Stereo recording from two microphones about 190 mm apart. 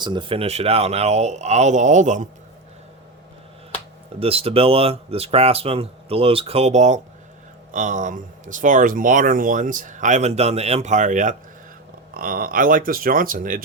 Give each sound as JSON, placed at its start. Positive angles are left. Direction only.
{"t": 0.0, "sound": "speech", "side_deg": -25}
{"t": 4.2, "sound": "speech", "side_deg": -30}